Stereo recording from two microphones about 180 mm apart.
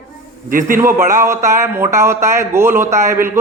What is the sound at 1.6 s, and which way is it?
A man's voice, 15° right (ahead or behind).